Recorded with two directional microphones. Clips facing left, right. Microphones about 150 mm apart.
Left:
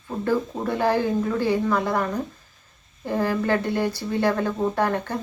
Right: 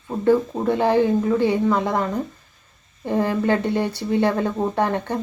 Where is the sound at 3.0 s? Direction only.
20° right (ahead or behind).